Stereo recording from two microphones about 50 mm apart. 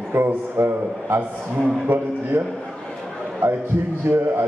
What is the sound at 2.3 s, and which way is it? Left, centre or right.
Speech, right.